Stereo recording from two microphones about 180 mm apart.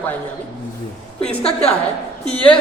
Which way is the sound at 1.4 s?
35° left (ahead or behind).